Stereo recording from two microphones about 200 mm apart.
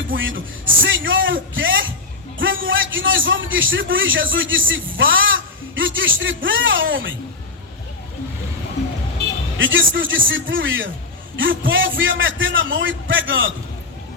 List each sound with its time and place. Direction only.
0.2 s a man's voice: 70° right (ahead or behind)
9.6 s a man's voice: 70° right (ahead or behind)